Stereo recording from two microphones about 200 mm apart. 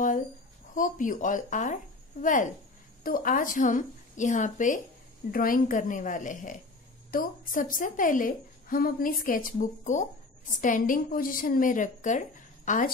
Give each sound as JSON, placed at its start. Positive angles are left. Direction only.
{"t": 0.7, "sound": "a woman's voice", "side_deg": 40}